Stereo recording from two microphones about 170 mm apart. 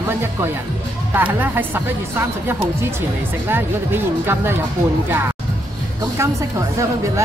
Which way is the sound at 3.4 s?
10° right (ahead or behind).